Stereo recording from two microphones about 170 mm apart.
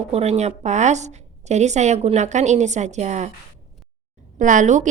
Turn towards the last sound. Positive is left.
turn(degrees=-45)  # may be behind; listen again after turning